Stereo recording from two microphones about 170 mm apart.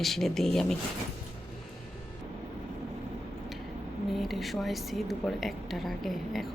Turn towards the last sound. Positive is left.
turn(degrees=0)  # may be behind; listen again after turning